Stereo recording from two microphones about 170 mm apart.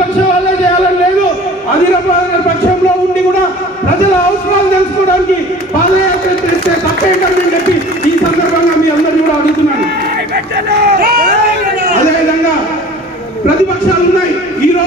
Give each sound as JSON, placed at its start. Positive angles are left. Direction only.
{"t": 10.3, "sound": "vehicle", "side_deg": -70}